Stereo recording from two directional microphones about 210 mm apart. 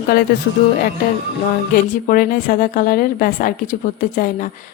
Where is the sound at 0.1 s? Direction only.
45° left (ahead or behind).